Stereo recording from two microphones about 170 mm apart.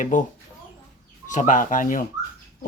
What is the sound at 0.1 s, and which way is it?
Speech, 50° left (ahead or behind).